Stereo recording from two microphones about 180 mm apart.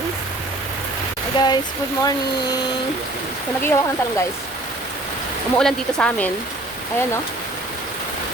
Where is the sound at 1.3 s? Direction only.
25° left (ahead or behind).